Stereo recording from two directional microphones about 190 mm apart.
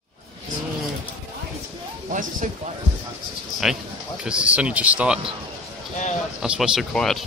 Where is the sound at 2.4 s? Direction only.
40° right (ahead or behind).